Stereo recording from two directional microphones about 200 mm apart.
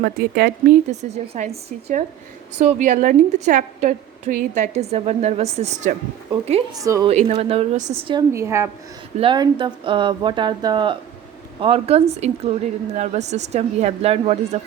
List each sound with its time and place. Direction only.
0.0 s speech: 50° right (ahead or behind)
0.9 s a woman's voice: 35° right (ahead or behind)
6.7 s a woman's voice: 15° right (ahead or behind)
7.1 s a woman's voice: 35° right (ahead or behind)
8.3 s a woman's voice: 15° right (ahead or behind)
9.1 s a woman's voice: 25° right (ahead or behind)